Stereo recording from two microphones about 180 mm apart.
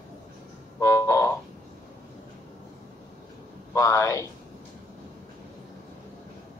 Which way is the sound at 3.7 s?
15° left (ahead or behind).